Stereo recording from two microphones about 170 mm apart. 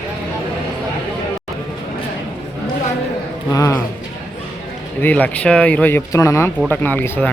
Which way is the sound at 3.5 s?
20° left (ahead or behind).